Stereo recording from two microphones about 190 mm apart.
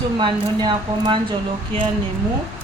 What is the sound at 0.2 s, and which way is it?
Speech, 25° right (ahead or behind).